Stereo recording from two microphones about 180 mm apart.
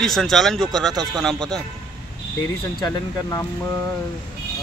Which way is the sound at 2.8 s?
20° left (ahead or behind).